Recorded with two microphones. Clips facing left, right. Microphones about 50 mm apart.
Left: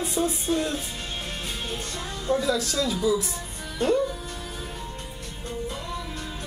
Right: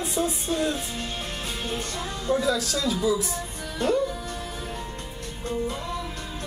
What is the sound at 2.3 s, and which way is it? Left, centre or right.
Speech, centre.